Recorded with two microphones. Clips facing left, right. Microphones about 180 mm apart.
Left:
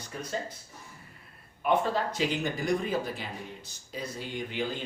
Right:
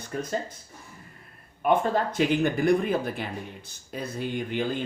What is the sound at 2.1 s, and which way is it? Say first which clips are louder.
Speech: right 6 dB; 55° right (ahead or behind).